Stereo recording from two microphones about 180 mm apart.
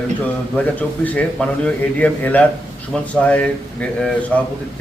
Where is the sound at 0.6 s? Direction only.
10° left (ahead or behind).